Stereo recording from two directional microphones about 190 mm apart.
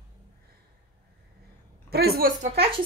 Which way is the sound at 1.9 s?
55° right (ahead or behind).